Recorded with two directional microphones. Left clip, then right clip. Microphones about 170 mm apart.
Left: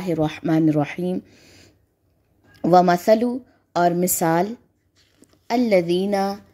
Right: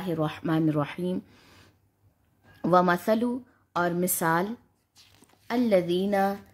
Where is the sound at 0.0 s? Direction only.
25° left (ahead or behind).